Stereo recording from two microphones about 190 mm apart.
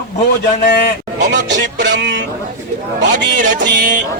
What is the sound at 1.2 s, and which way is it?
Speech, 70° right (ahead or behind).